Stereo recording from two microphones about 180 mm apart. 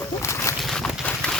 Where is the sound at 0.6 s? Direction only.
Centre (ahead or behind).